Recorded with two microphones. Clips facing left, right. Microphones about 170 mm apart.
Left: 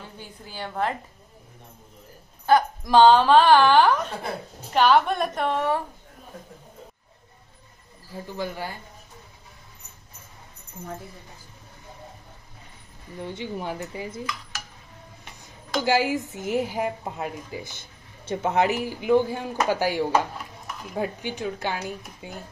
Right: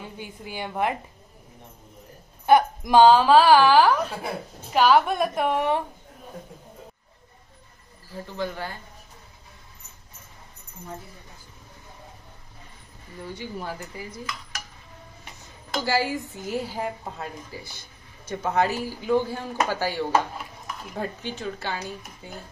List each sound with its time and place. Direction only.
0.0 s a woman's voice: 15° right (ahead or behind)
2.4 s a woman's voice: 15° right (ahead or behind)
8.4 s speech: 10° left (ahead or behind)
13.2 s speech: 25° left (ahead or behind)
15.8 s speech: 15° left (ahead or behind)